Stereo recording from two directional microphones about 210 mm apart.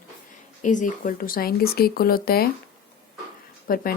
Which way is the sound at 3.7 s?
45° left (ahead or behind).